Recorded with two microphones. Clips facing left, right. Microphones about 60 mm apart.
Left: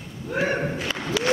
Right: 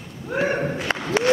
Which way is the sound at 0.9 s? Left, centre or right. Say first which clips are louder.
Right 5 dB; right.